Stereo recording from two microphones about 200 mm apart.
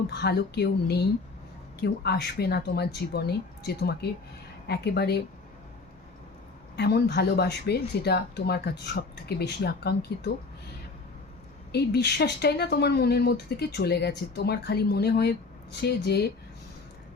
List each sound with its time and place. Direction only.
0.1 s a woman's voice: 55° left (ahead or behind)
6.7 s speech: 55° left (ahead or behind)
11.7 s a woman's voice: 55° left (ahead or behind)